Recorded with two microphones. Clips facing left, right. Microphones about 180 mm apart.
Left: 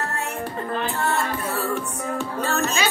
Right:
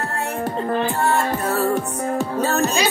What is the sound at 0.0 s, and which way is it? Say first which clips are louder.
Music: right 4 dB; 35° right (ahead or behind).